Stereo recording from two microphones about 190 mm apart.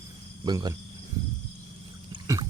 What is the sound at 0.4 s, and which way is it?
Speech, 20° right (ahead or behind).